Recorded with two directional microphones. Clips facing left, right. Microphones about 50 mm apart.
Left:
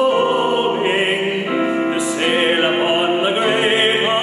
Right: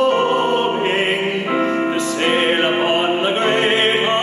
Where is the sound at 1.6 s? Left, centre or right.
Centre.